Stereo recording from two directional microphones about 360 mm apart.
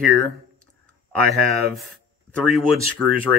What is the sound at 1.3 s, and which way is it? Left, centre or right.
Speech, centre.